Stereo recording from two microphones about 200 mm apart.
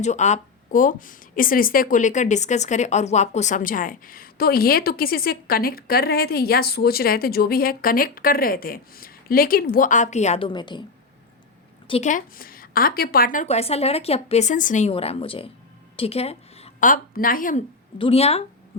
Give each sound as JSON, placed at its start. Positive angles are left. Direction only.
{"t": 0.0, "sound": "speech", "side_deg": 35}
{"t": 11.9, "sound": "a woman's voice", "side_deg": 35}
{"t": 17.9, "sound": "a woman's voice", "side_deg": 30}